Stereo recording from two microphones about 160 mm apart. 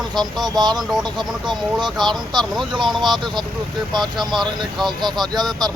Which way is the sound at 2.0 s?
25° right (ahead or behind).